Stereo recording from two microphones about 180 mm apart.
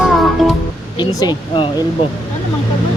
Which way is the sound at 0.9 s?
20° left (ahead or behind).